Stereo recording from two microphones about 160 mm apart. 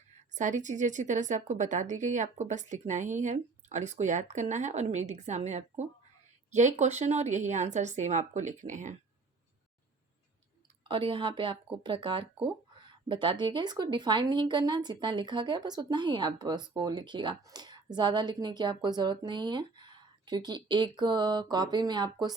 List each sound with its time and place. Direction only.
0.3 s speech: 50° right (ahead or behind)
10.8 s speech: 30° right (ahead or behind)